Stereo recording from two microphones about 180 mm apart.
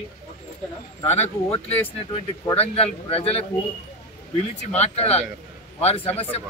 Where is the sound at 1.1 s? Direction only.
35° left (ahead or behind).